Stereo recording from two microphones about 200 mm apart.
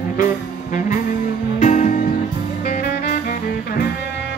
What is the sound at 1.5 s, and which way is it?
Music, 40° left (ahead or behind).